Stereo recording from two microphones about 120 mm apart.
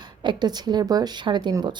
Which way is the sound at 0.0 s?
40° right (ahead or behind).